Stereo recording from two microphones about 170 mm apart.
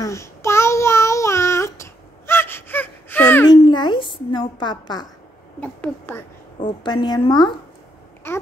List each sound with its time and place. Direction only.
0.0 s child singing: 15° left (ahead or behind)
3.4 s music: 25° left (ahead or behind)
5.6 s speech: 10° left (ahead or behind)
6.6 s a woman's voice: 30° left (ahead or behind)
8.2 s speech: 15° left (ahead or behind)